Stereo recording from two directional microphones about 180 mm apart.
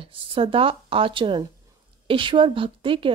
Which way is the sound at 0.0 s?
30° right (ahead or behind).